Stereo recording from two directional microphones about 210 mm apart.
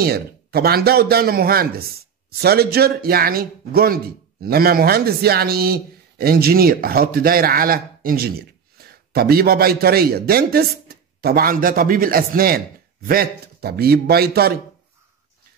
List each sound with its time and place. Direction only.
0.0 s a man's voice: 45° right (ahead or behind)